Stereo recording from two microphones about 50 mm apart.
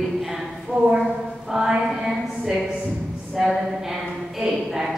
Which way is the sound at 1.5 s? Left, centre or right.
Centre.